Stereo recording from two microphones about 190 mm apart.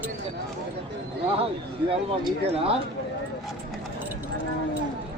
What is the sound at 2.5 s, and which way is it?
Speech, 30° right (ahead or behind).